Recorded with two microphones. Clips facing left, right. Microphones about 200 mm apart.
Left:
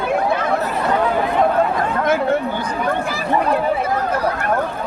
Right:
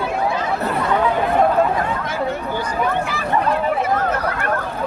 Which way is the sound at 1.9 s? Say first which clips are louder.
Left 6 dB; 60° left (ahead or behind).